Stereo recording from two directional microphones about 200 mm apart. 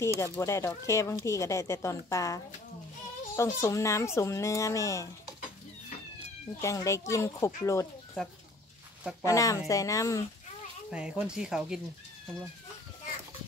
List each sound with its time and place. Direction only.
0.0 s speech: 15° left (ahead or behind)
6.6 s speech: 15° left (ahead or behind)
9.2 s speech: 15° left (ahead or behind)
10.9 s speech: 5° right (ahead or behind)